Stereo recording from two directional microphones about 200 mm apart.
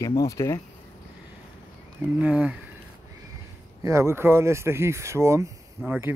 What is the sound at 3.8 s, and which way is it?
Speech, 15° right (ahead or behind).